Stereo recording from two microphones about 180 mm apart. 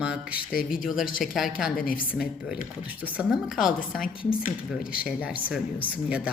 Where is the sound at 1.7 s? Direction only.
50° left (ahead or behind).